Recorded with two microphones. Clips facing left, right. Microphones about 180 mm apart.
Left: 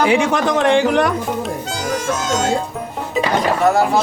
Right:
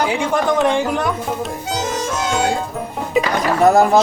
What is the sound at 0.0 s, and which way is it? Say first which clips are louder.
Speech: left 3 dB; 75° left (ahead or behind).